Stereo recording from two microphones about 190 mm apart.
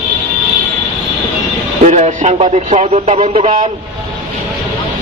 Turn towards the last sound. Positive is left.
turn(degrees=-40)  # may be behind; listen again after turning